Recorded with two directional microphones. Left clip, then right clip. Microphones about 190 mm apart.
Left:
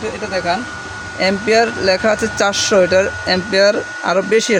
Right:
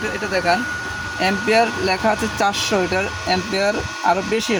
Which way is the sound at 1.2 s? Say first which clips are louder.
Left 3 dB; 30° left (ahead or behind).